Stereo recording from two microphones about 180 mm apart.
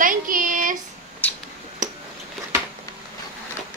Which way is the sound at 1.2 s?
10° left (ahead or behind).